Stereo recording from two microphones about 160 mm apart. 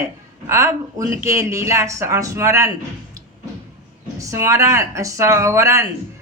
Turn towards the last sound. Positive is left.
turn(degrees=-20)  # may be behind; listen again after turning